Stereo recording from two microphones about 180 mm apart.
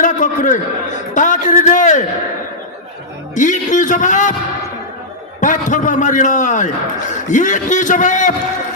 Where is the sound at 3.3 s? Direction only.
45° left (ahead or behind).